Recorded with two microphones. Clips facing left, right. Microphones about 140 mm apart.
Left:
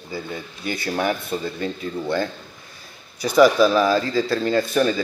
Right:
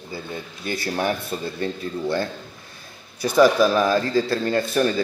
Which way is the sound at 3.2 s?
10° left (ahead or behind).